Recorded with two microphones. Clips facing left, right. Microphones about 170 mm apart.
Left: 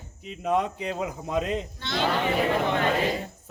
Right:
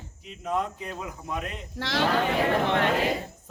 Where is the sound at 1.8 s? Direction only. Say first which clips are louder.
Right 2 dB; 90° right.